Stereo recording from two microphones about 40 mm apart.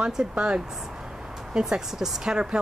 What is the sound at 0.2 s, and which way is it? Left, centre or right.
Speech, right.